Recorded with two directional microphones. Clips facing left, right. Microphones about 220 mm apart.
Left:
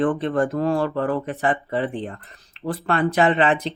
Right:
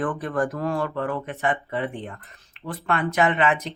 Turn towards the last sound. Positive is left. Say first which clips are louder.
# left 3 dB
turn(degrees=30)  # may be behind; listen again after turning